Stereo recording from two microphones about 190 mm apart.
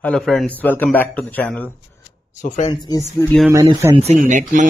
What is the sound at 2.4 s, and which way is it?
Speech, 40° left (ahead or behind).